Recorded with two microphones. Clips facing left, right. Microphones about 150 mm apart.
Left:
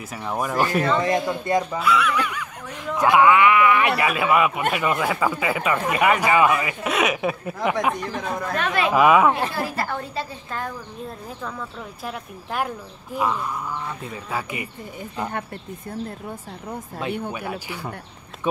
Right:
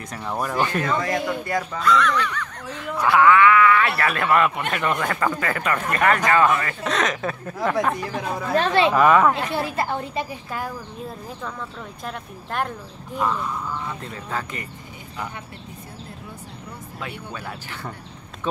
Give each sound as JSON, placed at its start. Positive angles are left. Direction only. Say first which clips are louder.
{"t": 0.1, "sound": "speech", "louder": "left 1 dB", "side_deg": 5}
{"t": 0.9, "sound": "speech", "louder": "left 2 dB", "side_deg": 25}
{"t": 7.9, "sound": "speech", "louder": "even", "side_deg": -5}
{"t": 8.5, "sound": "a woman's voice", "louder": "right 5 dB", "side_deg": -30}
{"t": 8.9, "sound": "speech", "louder": "left 3 dB", "side_deg": 5}
{"t": 9.5, "sound": "a woman's voice", "louder": "right 2 dB", "side_deg": -20}
{"t": 10.5, "sound": "speech", "louder": "right 1 dB", "side_deg": -5}
{"t": 12.0, "sound": "speech", "louder": "left 1 dB", "side_deg": 5}
{"t": 17.3, "sound": "speech", "louder": "left 4 dB", "side_deg": 15}